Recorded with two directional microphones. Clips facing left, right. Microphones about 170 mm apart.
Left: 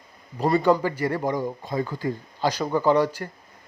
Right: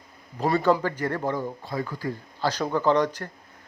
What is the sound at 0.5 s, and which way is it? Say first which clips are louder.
Speech: left 2 dB; 15° left (ahead or behind).